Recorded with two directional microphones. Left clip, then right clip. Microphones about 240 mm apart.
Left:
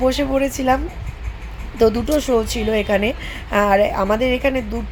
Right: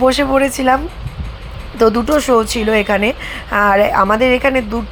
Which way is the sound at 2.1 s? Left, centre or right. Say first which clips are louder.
Right 5 dB; centre.